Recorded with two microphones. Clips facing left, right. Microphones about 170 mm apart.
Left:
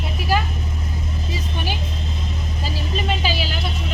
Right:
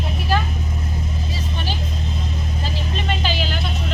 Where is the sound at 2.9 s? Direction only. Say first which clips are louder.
Left 1 dB; 5° left (ahead or behind).